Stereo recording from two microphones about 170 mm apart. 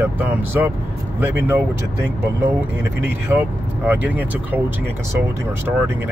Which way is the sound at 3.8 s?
10° right (ahead or behind).